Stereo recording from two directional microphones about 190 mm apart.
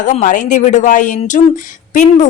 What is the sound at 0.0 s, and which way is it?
A woman's voice, 40° left (ahead or behind).